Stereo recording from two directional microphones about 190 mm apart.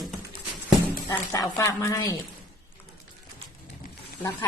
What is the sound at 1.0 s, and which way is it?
A woman's voice, 15° left (ahead or behind).